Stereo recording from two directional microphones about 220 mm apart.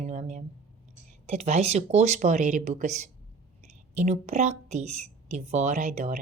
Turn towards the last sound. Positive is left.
turn(degrees=-35)  # may be behind; listen again after turning